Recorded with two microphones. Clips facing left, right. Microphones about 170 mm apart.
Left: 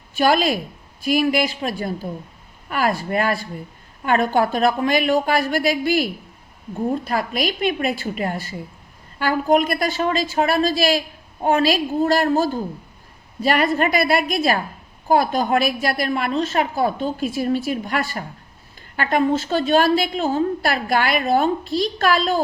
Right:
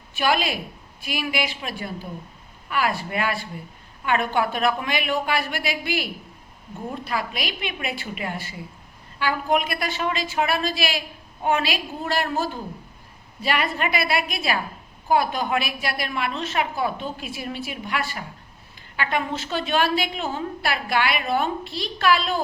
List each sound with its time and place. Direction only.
0.1 s a woman's voice: 40° left (ahead or behind)